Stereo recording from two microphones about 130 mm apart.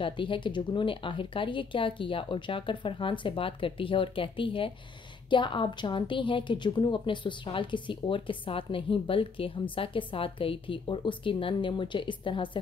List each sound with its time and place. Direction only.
0.0 s a woman's voice: 40° left (ahead or behind)